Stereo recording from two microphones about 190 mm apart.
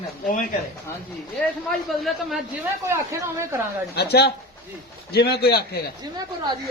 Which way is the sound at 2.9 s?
15° right (ahead or behind).